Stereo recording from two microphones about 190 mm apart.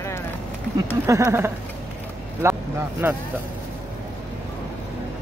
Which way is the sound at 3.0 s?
10° right (ahead or behind).